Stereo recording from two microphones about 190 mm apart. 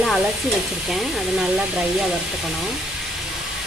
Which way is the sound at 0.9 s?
5° right (ahead or behind).